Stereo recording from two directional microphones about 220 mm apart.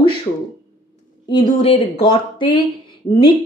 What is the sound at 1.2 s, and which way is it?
A woman's voice, 25° left (ahead or behind).